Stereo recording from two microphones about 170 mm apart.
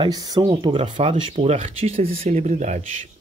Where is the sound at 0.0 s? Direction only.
20° right (ahead or behind).